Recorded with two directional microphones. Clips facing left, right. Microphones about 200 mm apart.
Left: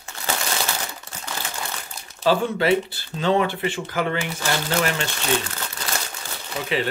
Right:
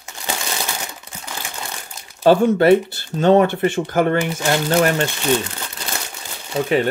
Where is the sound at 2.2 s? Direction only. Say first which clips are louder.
Right 7 dB; 55° right (ahead or behind).